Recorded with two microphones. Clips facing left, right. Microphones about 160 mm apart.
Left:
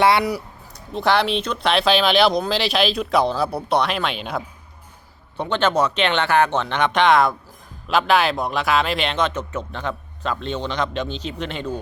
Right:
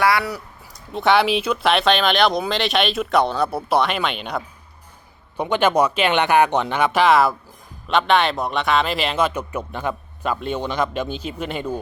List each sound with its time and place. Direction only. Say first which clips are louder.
0.0 s speech: left 2 dB; 25° left (ahead or behind)
0.9 s speech: right 2 dB; centre (ahead or behind)
5.4 s speech: right 2 dB; 10° right (ahead or behind)